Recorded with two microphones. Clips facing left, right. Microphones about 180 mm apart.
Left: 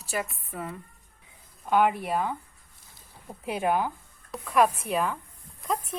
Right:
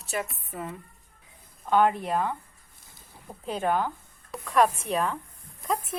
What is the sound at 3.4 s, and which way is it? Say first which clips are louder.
A woman's voice: even; 10° left (ahead or behind).